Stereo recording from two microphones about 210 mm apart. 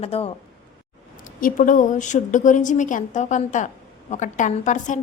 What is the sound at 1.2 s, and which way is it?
A woman's voice, 40° left (ahead or behind).